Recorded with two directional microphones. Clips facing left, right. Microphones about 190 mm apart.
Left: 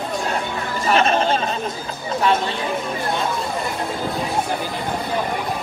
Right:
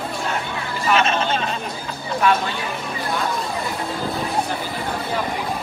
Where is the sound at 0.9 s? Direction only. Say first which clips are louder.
Left 2 dB; 35° left (ahead or behind).